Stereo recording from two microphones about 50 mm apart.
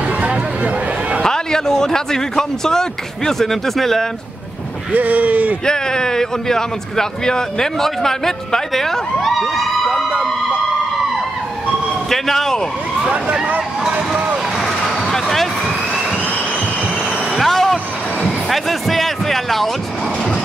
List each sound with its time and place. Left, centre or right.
0.2 s a sound: right
1.2 s speech: centre
4.9 s speech: right
5.7 s a man's voice: centre
12.1 s a man's voice: centre
13.0 s speech: centre
13.8 s vehicle: centre
14.6 s vehicle: centre
17.4 s vehicle: centre
18.5 s music: centre